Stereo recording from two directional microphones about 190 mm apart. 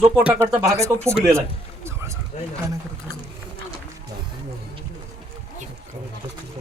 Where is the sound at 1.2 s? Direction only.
15° right (ahead or behind).